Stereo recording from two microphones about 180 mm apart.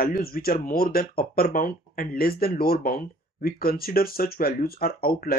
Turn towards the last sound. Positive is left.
turn(degrees=55)  # may be behind; listen again after turning